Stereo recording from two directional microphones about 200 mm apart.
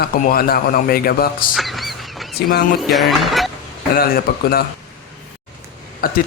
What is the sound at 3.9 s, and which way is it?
Speech, 45° left (ahead or behind).